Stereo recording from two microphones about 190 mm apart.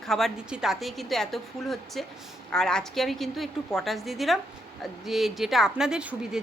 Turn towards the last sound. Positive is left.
turn(degrees=-5)  # may be behind; listen again after turning